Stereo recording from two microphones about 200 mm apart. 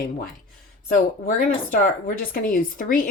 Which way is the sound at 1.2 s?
45° left (ahead or behind).